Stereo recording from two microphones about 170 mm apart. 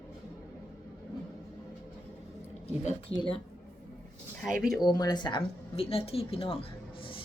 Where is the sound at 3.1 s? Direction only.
25° left (ahead or behind).